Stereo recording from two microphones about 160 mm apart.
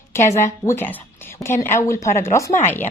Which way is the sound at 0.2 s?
50° left (ahead or behind).